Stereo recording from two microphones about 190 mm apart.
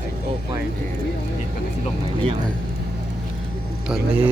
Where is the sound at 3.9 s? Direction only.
10° right (ahead or behind).